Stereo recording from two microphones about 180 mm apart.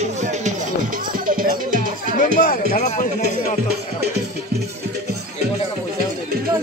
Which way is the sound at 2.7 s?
40° left (ahead or behind).